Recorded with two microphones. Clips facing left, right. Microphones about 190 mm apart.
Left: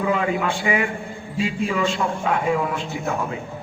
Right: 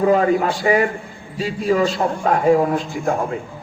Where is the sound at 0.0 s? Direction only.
40° right (ahead or behind).